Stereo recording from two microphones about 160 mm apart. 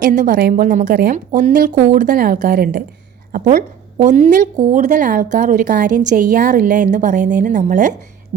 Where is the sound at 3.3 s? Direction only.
50° right (ahead or behind).